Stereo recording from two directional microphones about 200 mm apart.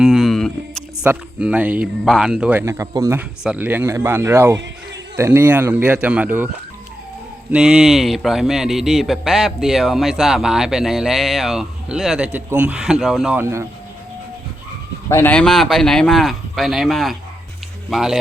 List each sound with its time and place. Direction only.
0.0 s speech: centre (ahead or behind)
7.5 s speech: 5° right (ahead or behind)
15.1 s speech: 10° left (ahead or behind)